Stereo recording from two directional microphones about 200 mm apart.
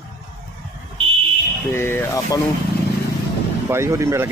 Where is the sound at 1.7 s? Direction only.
10° left (ahead or behind).